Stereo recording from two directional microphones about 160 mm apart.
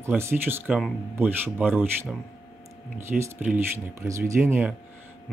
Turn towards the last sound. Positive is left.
turn(degrees=-15)  # may be behind; listen again after turning